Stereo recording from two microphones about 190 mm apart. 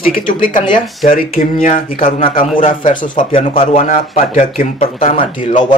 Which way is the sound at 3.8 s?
45° left (ahead or behind).